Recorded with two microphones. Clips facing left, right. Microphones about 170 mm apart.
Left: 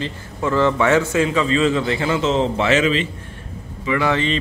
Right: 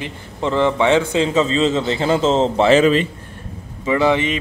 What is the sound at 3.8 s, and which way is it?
Speech, 25° right (ahead or behind).